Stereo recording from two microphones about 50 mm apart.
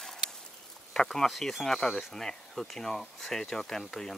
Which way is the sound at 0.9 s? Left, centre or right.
Centre.